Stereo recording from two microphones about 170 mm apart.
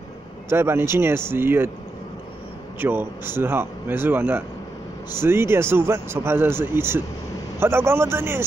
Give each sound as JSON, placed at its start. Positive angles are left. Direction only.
{"t": 0.5, "sound": "speech", "side_deg": -15}
{"t": 2.8, "sound": "speech", "side_deg": -10}